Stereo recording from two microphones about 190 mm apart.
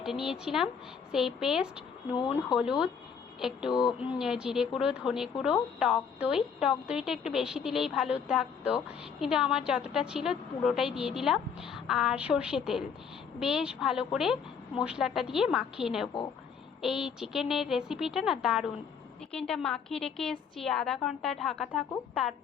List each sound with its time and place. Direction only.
0.0 s a woman's voice: centre (ahead or behind)
2.1 s speech: 25° left (ahead or behind)
2.6 s a woman's voice: 5° right (ahead or behind)
3.7 s speech: 20° left (ahead or behind)
4.2 s a woman's voice: 5° right (ahead or behind)